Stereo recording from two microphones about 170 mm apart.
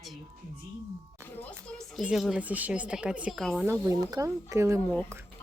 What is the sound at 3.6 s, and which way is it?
A woman's voice, 15° right (ahead or behind).